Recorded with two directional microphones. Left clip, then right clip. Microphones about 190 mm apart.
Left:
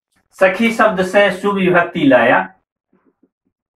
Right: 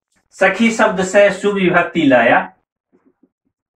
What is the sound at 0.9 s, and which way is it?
Speech, 10° left (ahead or behind).